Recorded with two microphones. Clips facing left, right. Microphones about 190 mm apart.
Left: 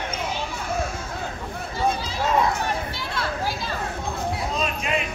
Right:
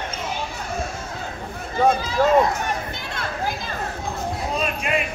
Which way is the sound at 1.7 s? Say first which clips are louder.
Right 7 dB; 50° right (ahead or behind).